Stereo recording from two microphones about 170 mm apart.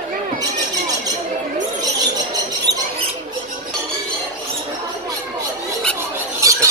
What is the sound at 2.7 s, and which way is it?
Rodents, 80° right.